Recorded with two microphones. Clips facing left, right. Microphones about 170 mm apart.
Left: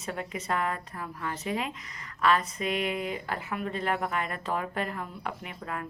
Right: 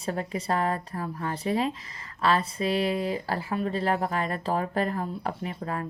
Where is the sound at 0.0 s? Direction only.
35° right (ahead or behind).